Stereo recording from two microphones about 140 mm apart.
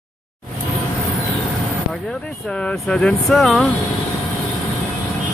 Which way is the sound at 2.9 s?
5° left (ahead or behind).